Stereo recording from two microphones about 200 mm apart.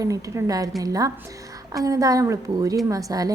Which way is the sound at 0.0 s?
15° right (ahead or behind).